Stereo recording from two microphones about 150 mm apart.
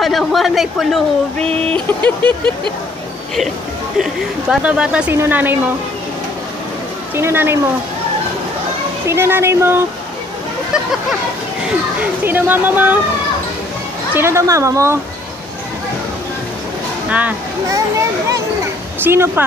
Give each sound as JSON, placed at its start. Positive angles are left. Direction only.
{"t": 0.0, "sound": "speech", "side_deg": 0}
{"t": 4.0, "sound": "speech", "side_deg": -5}
{"t": 7.2, "sound": "speech", "side_deg": -15}
{"t": 9.0, "sound": "speech", "side_deg": -15}
{"t": 10.7, "sound": "a sound", "side_deg": 0}
{"t": 12.0, "sound": "speech", "side_deg": -10}
{"t": 14.1, "sound": "a woman's voice", "side_deg": -15}
{"t": 17.1, "sound": "speech", "side_deg": -10}
{"t": 19.0, "sound": "speech", "side_deg": -15}